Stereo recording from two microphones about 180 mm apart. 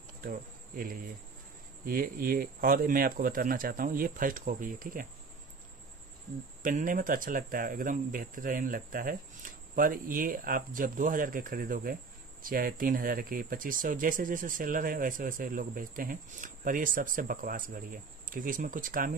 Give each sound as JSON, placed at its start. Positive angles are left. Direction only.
{"t": 0.2, "sound": "insect", "side_deg": -55}
{"t": 1.9, "sound": "speech", "side_deg": -55}
{"t": 6.6, "sound": "speech", "side_deg": -50}